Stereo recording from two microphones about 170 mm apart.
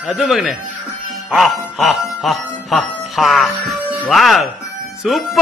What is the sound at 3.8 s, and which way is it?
Music, 10° right (ahead or behind).